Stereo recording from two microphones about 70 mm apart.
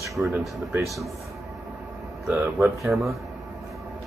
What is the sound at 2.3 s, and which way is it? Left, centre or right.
Speech, right.